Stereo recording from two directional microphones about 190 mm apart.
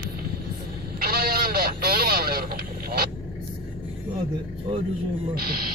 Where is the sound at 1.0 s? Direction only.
50° right (ahead or behind).